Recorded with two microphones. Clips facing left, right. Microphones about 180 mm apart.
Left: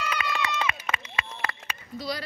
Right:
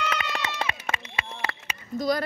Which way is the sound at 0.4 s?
30° right (ahead or behind).